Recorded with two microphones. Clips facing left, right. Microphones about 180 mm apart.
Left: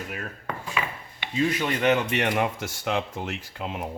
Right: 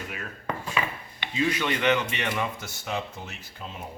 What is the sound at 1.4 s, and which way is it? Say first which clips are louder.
Speech: left 2 dB; 45° left (ahead or behind).